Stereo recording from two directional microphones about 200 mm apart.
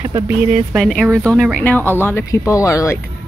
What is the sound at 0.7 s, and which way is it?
Speech, centre (ahead or behind).